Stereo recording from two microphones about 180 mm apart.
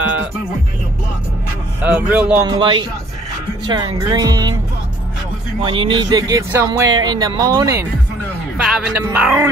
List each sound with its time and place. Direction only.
1.8 s speech: 10° right (ahead or behind)
2.4 s speech: 25° right (ahead or behind)
5.6 s speech: 30° right (ahead or behind)
8.5 s speech: 5° right (ahead or behind)